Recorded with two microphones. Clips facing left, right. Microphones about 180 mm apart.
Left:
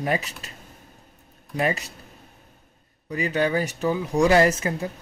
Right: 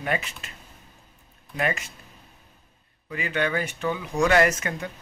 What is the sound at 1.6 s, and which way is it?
Speech, 35° left (ahead or behind).